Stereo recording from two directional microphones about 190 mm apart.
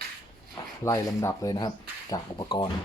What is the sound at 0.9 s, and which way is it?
Speech, 15° left (ahead or behind).